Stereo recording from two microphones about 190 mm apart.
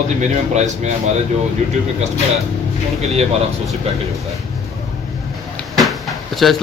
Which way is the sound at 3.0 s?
35° right (ahead or behind).